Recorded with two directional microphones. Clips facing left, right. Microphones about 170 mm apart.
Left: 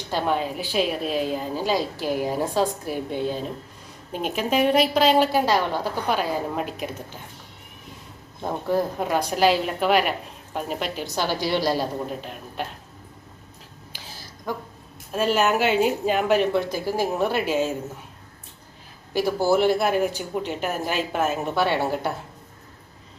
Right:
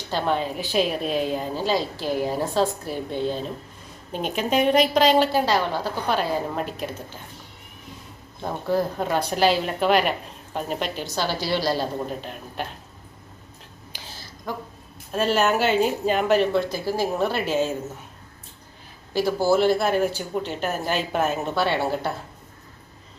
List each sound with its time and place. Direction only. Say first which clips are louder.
0.1 s speech: even; 10° left (ahead or behind)
1.6 s a woman's voice: left 1 dB; 10° left (ahead or behind)
8.4 s speech: even; 15° left (ahead or behind)
11.1 s a woman's voice: left 2 dB; 15° left (ahead or behind)
12.0 s speech: even; centre (ahead or behind)
15.1 s a woman's voice: even; 5° left (ahead or behind)
19.1 s a woman's voice: even; 15° left (ahead or behind)
21.5 s a woman's voice: even; 15° left (ahead or behind)